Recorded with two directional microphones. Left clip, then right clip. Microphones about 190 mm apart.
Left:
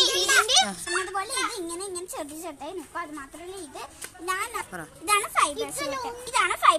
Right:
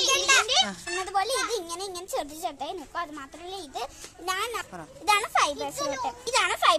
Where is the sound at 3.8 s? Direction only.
50° right (ahead or behind).